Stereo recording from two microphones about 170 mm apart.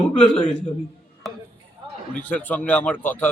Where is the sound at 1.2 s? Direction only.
Centre (ahead or behind).